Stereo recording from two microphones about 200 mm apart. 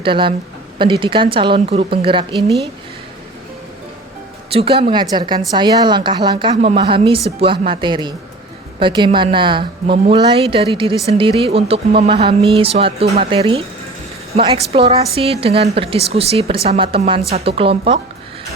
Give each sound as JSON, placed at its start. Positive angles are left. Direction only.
{"t": 0.0, "sound": "a woman's voice", "side_deg": -25}
{"t": 4.5, "sound": "a woman's voice", "side_deg": -30}